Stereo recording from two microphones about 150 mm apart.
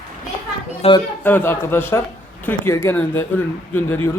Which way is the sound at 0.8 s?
40° left (ahead or behind).